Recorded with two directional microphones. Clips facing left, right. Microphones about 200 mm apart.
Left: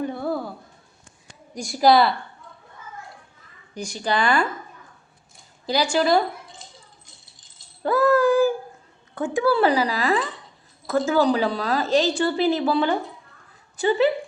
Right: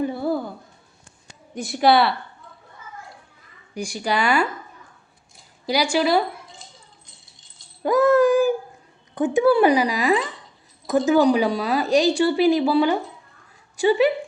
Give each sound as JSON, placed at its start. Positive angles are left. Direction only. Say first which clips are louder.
{"t": 0.0, "sound": "a sound", "louder": "right 3 dB", "side_deg": -5}
{"t": 1.5, "sound": "speech", "louder": "even", "side_deg": 0}
{"t": 3.8, "sound": "a woman's voice", "louder": "right 1 dB", "side_deg": -10}
{"t": 5.6, "sound": "speech", "louder": "even", "side_deg": -10}
{"t": 7.8, "sound": "a sound", "louder": "right 2 dB", "side_deg": -15}
{"t": 9.1, "sound": "a woman's voice", "louder": "right 4 dB", "side_deg": -20}